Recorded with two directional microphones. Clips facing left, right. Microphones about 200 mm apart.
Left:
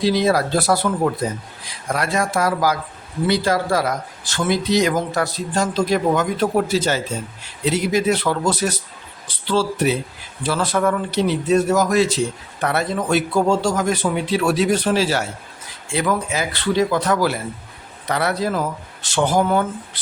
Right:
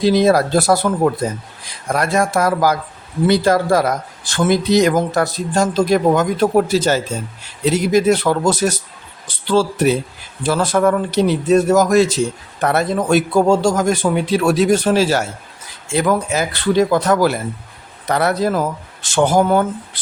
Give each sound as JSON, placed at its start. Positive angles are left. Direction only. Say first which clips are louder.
{"t": 0.0, "sound": "speech", "louder": "right 4 dB", "side_deg": -45}
{"t": 1.9, "sound": "speech", "louder": "right 4 dB", "side_deg": -45}